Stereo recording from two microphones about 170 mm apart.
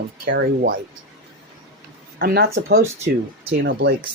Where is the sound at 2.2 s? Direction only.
70° right (ahead or behind).